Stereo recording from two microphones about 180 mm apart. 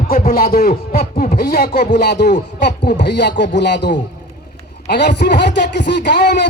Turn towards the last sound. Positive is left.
turn(degrees=70)  # may be behind; listen again after turning